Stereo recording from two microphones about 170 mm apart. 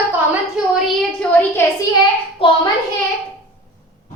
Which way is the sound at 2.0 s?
30° left (ahead or behind).